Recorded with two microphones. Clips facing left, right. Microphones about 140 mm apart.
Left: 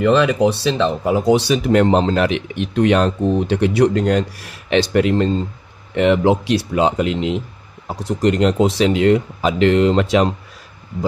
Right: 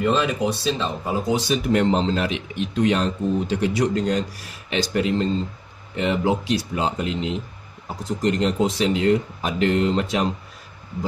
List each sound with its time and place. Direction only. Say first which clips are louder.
0.0 s speech: left 7 dB; 70° left (ahead or behind)